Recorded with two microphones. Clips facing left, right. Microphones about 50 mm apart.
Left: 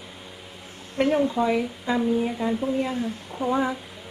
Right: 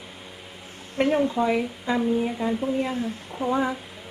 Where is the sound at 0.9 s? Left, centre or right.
Centre.